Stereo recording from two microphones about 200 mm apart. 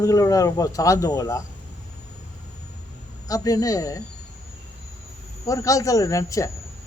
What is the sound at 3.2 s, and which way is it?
Speech, 15° left (ahead or behind).